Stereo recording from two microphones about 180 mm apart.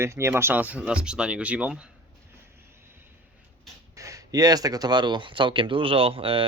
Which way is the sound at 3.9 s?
20° right (ahead or behind).